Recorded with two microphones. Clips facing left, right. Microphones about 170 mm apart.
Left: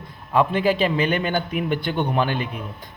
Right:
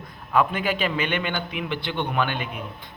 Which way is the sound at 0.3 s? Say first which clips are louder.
Left 4 dB; 30° left (ahead or behind).